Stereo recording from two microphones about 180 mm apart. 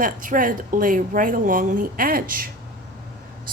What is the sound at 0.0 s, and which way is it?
A woman's voice, 50° right (ahead or behind).